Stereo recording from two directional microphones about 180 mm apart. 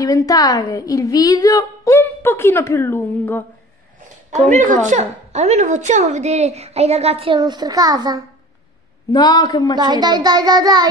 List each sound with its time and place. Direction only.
0.0 s a woman's voice: 20° left (ahead or behind)
4.5 s a woman's voice: 45° right (ahead or behind)
7.3 s a child's voice: 25° right (ahead or behind)
9.1 s a woman's voice: 25° left (ahead or behind)
9.8 s a child's voice: 25° right (ahead or behind)